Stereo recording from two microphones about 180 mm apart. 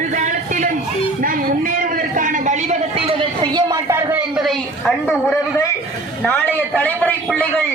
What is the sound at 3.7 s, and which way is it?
A man's voice, 15° right (ahead or behind).